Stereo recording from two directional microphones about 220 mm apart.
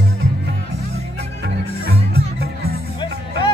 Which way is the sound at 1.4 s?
45° right (ahead or behind).